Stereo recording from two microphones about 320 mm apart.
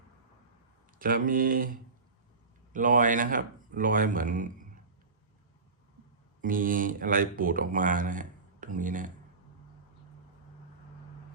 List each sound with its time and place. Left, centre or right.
0.9 s speech: right
6.4 s speech: right